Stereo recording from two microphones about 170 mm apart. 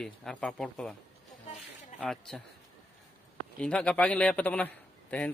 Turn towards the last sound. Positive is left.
turn(degrees=10)  # may be behind; listen again after turning